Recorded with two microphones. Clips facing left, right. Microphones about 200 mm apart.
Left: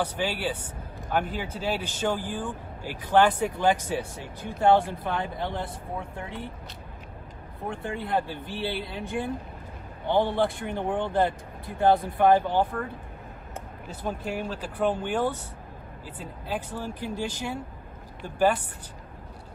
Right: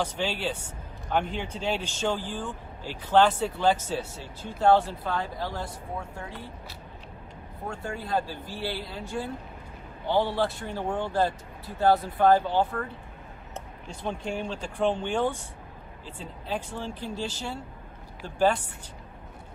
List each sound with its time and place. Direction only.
0.0 s a man's voice: 10° left (ahead or behind)
7.6 s a man's voice: 20° left (ahead or behind)
13.8 s speech: 5° left (ahead or behind)